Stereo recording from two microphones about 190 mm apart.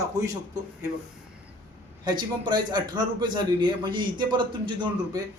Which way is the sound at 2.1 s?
25° right (ahead or behind).